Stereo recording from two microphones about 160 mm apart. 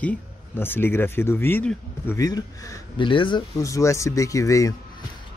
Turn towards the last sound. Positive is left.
turn(degrees=20)  # may be behind; listen again after turning